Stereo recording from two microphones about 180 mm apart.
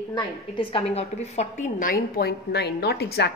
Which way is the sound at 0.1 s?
30° left (ahead or behind).